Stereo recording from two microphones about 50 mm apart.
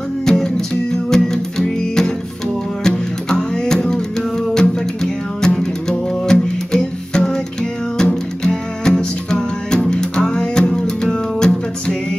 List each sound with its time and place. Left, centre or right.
0.2 s music: centre